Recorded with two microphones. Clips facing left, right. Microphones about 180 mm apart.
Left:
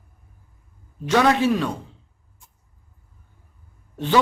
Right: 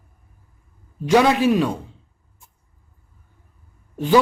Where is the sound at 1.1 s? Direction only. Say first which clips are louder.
Right 3 dB; 10° right (ahead or behind).